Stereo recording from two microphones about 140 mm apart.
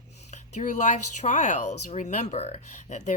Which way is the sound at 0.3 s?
60° left (ahead or behind).